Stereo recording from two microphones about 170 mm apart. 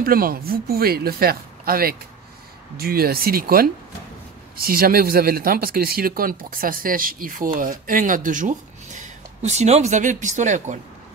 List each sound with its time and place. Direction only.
0.0 s speech: 60° right (ahead or behind)